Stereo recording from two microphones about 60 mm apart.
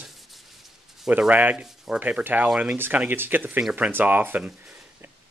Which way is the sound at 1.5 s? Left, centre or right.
Centre.